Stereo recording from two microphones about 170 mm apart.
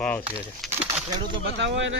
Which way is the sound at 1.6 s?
90° right.